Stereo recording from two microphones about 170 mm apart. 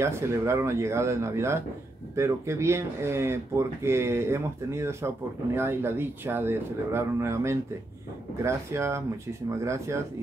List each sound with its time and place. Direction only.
0.0 s speech: 15° right (ahead or behind)